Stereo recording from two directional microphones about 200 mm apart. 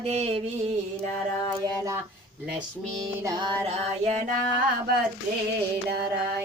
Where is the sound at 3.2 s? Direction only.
20° right (ahead or behind).